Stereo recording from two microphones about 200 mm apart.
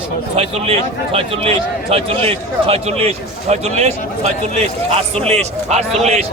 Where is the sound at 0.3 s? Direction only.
30° right (ahead or behind).